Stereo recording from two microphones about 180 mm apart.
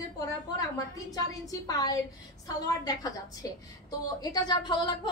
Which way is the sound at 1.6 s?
20° left (ahead or behind).